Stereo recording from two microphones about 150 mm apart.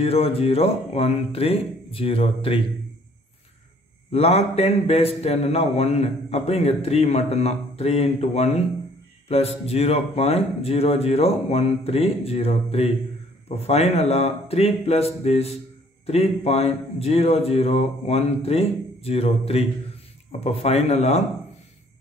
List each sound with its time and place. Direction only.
0.0 s speech: 40° left (ahead or behind)
4.1 s speech: 45° left (ahead or behind)